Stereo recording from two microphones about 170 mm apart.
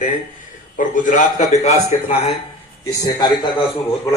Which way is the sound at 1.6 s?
35° left (ahead or behind).